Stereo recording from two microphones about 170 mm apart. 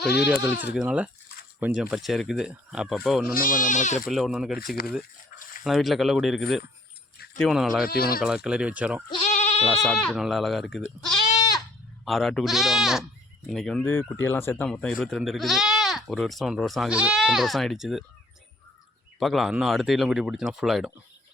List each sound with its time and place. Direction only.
0.4 s speech: 10° right (ahead or behind)
3.3 s speech: 50° left (ahead or behind)
4.1 s speech: centre (ahead or behind)
5.3 s dog: 50° left (ahead or behind)
5.6 s speech: centre (ahead or behind)
7.9 s speech: 65° left (ahead or behind)
8.2 s speech: 5° right (ahead or behind)
9.3 s goat: 40° left (ahead or behind)
9.7 s speech: centre (ahead or behind)
11.3 s goat: 25° left (ahead or behind)
12.0 s speech: centre (ahead or behind)
19.2 s speech: centre (ahead or behind)